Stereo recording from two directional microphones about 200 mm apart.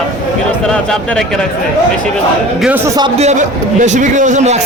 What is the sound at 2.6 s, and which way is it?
Speech, 10° right (ahead or behind).